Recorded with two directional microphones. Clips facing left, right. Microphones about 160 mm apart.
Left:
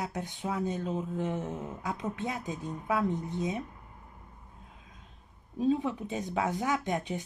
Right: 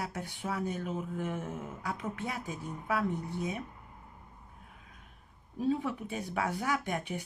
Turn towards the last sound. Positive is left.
turn(degrees=20)  # may be behind; listen again after turning